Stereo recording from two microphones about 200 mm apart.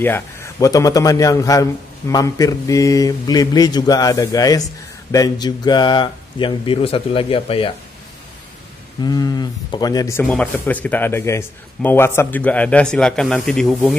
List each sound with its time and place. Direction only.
0.0 s speech: 10° left (ahead or behind); by 7.7 s 25° left (ahead or behind)
9.0 s speech: 20° left (ahead or behind)
10.2 s speech: 5° left (ahead or behind)